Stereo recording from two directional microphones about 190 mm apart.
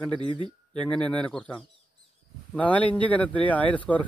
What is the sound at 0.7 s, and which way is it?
Speech, 5° left (ahead or behind).